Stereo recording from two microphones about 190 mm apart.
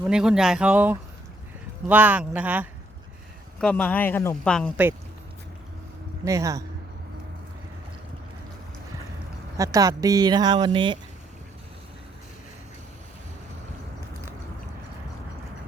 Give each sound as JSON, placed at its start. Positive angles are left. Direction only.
{"t": 0.1, "sound": "speech", "side_deg": -5}
{"t": 3.6, "sound": "speech", "side_deg": 5}
{"t": 4.8, "sound": "speech", "side_deg": -10}
{"t": 6.2, "sound": "speech", "side_deg": -15}
{"t": 9.6, "sound": "speech", "side_deg": -20}